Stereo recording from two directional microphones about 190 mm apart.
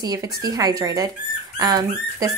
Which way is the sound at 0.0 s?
20° right (ahead or behind).